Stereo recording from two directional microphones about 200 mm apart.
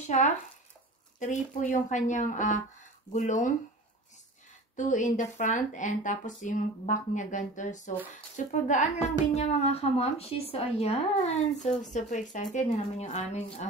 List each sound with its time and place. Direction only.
1.2 s speech: 40° left (ahead or behind)
4.7 s speech: 40° left (ahead or behind)